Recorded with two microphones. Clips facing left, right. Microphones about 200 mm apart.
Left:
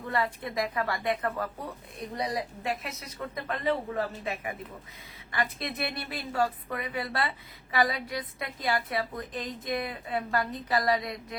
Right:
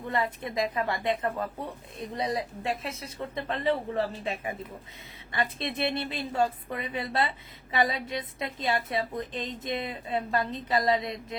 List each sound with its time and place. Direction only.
0.1 s a woman's voice: 20° right (ahead or behind)